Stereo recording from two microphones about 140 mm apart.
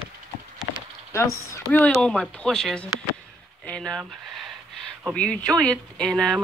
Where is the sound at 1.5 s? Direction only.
15° left (ahead or behind).